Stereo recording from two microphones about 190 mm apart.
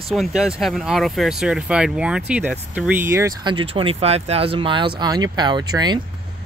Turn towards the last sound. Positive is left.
turn(degrees=-20)  # may be behind; listen again after turning